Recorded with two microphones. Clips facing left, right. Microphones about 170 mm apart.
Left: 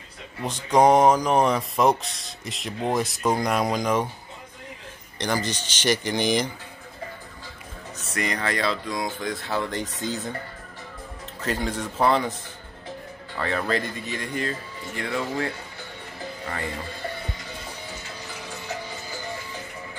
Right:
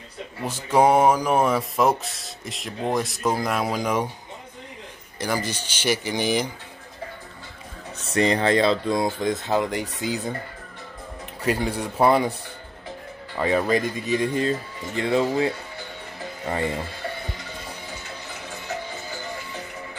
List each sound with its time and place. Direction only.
0.5 s speech: 5° right (ahead or behind)
5.2 s speech: 10° right (ahead or behind)
8.0 s speech: 30° right (ahead or behind); by 10.3 s 10° right (ahead or behind)
11.4 s speech: 10° right (ahead or behind)
13.4 s speech: 15° right (ahead or behind)